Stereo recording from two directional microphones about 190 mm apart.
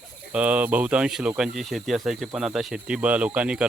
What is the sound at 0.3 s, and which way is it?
Speech, 5° right (ahead or behind).